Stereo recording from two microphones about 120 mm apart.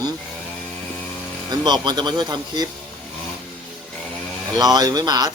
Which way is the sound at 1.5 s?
35° right (ahead or behind).